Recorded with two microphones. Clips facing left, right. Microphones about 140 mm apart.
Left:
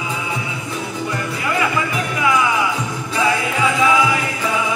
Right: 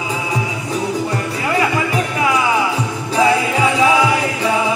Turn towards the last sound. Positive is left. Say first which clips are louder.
# right 2 dB
turn(degrees=-35)  # may be behind; listen again after turning